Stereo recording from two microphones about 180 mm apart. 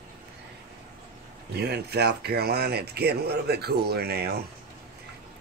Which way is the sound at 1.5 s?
65° right (ahead or behind).